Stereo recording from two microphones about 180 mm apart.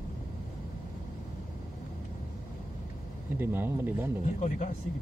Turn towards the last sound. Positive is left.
turn(degrees=40)  # may be behind; listen again after turning